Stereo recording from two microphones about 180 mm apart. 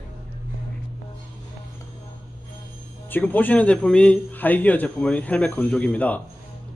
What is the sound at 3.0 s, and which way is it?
A man's voice, 10° left (ahead or behind).